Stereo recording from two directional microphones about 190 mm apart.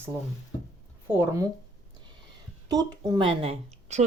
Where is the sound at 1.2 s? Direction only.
15° right (ahead or behind).